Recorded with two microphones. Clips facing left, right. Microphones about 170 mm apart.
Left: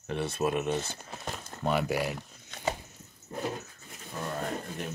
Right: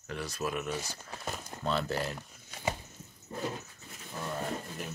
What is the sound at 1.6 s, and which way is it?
Speech, 10° left (ahead or behind).